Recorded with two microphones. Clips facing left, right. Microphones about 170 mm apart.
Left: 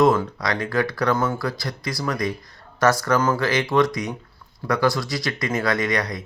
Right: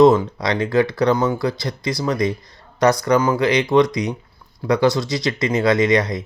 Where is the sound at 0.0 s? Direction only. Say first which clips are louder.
Right 5 dB; 20° right (ahead or behind).